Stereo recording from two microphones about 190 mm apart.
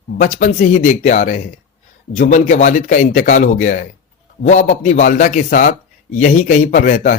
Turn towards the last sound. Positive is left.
turn(degrees=45)  # may be behind; listen again after turning